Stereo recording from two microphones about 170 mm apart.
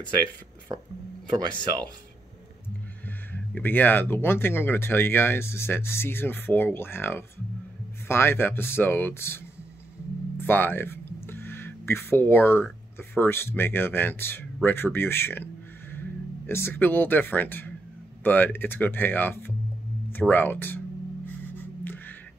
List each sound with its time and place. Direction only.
0.7 s speech: 20° right (ahead or behind)
3.5 s speech: 10° left (ahead or behind)
10.4 s speech: 10° left (ahead or behind)
11.2 s a sound: 15° left (ahead or behind)
13.1 s speech: 15° left (ahead or behind)
21.3 s music: 10° left (ahead or behind)